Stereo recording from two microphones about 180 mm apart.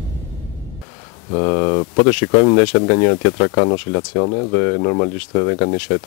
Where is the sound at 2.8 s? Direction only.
20° left (ahead or behind).